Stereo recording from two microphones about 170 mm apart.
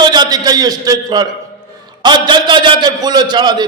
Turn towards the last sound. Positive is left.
turn(degrees=-25)  # may be behind; listen again after turning